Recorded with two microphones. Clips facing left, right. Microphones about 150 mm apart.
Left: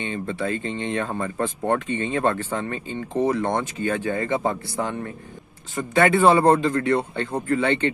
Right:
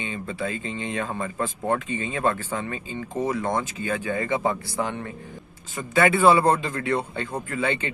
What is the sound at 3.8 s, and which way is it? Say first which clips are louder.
Speech: left 3 dB; 40° left (ahead or behind).